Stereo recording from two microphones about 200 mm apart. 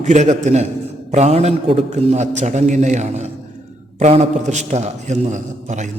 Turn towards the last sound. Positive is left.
turn(degrees=-35)  # may be behind; listen again after turning